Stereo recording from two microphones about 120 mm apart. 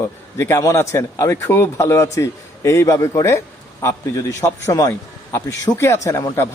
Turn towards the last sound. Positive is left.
turn(degrees=25)  # may be behind; listen again after turning